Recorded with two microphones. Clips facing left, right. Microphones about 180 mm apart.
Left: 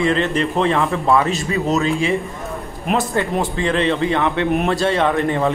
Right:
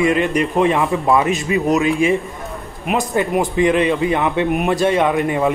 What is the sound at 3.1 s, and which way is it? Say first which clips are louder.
Speech: right 2 dB; 15° right (ahead or behind).